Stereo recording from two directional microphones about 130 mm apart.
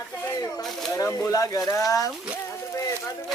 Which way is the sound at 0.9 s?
25° left (ahead or behind).